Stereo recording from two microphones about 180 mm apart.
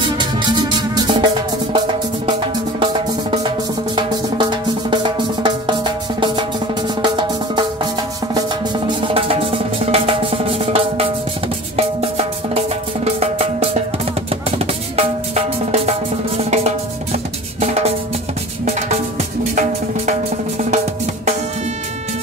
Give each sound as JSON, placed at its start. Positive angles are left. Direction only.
{"t": 0.0, "sound": "music", "side_deg": -25}
{"t": 2.8, "sound": "music", "side_deg": -30}
{"t": 15.0, "sound": "drum", "side_deg": -35}
{"t": 18.7, "sound": "music", "side_deg": -35}